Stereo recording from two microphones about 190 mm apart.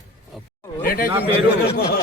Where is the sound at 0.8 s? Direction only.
50° left (ahead or behind).